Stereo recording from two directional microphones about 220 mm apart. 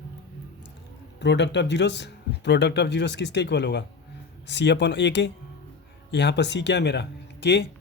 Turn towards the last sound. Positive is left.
turn(degrees=50)  # may be behind; listen again after turning